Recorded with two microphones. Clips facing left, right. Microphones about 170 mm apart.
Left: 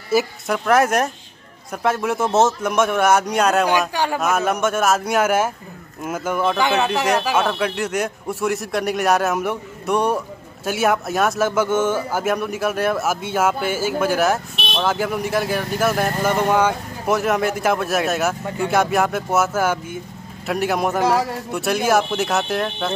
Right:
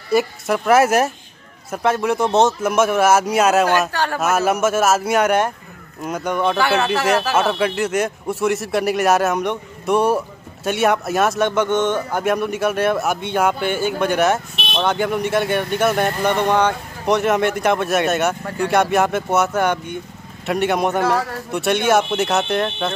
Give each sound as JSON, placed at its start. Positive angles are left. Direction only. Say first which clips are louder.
{"t": 0.1, "sound": "a man's voice", "louder": "right 2 dB", "side_deg": 0}
{"t": 3.9, "sound": "a man's voice", "louder": "even", "side_deg": 15}
{"t": 4.2, "sound": "a man's voice", "louder": "right 4 dB", "side_deg": -5}
{"t": 21.0, "sound": "a man's voice", "louder": "left 1 dB", "side_deg": 15}
{"t": 21.5, "sound": "a man's voice", "louder": "right 4 dB", "side_deg": 0}